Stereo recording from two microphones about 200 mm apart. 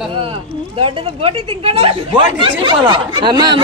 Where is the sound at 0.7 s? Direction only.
30° right (ahead or behind).